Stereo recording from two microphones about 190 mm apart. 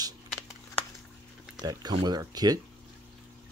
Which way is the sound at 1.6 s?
25° right (ahead or behind).